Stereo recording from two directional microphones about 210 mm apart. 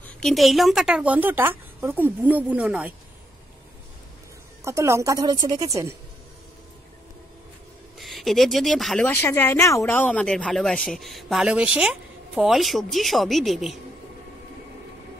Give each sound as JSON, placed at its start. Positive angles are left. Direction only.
{"t": 0.0, "sound": "speech", "side_deg": 0}
{"t": 4.6, "sound": "a woman's voice", "side_deg": -15}
{"t": 8.0, "sound": "speech", "side_deg": 0}